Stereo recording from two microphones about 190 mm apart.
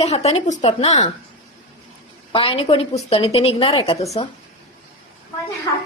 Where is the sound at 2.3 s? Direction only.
30° left (ahead or behind).